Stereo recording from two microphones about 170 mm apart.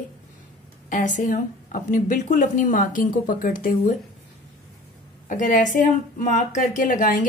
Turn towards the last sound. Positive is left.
turn(degrees=55)  # may be behind; listen again after turning